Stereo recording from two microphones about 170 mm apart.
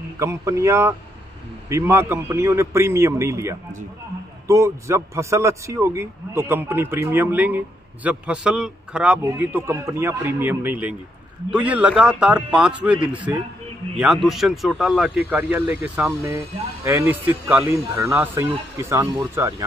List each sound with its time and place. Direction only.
0.2 s a man's voice: 15° right (ahead or behind)